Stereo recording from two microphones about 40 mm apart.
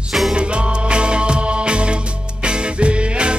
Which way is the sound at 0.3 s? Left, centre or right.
Right.